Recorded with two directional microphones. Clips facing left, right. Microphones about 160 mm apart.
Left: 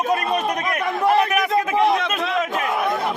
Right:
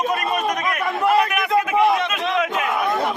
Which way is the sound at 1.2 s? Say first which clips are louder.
Even; 35° left (ahead or behind).